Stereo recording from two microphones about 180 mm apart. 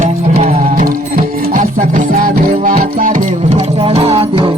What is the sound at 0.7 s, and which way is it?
Music, 50° right (ahead or behind).